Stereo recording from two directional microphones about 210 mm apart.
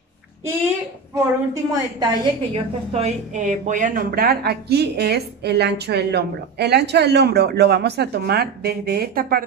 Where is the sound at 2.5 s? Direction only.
30° right (ahead or behind).